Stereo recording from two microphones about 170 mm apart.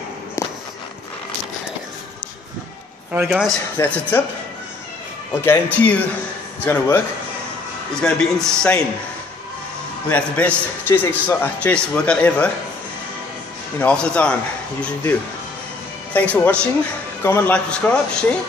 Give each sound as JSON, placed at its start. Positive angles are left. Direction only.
{"t": 0.4, "sound": "walk", "side_deg": 15}
{"t": 3.1, "sound": "a man's voice", "side_deg": -5}
{"t": 3.7, "sound": "a man's voice", "side_deg": 15}
{"t": 5.4, "sound": "a man's voice", "side_deg": 10}
{"t": 10.0, "sound": "a man's voice", "side_deg": 10}
{"t": 13.7, "sound": "a man's voice", "side_deg": 5}